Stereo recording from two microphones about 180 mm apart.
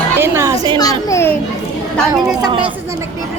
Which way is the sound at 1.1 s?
15° left (ahead or behind).